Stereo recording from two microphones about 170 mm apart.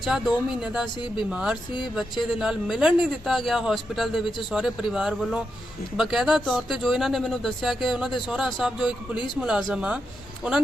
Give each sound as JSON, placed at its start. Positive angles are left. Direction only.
{"t": 0.0, "sound": "speech", "side_deg": 0}